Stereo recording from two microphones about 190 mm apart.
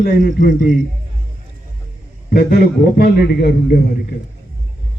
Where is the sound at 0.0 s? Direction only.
50° left (ahead or behind).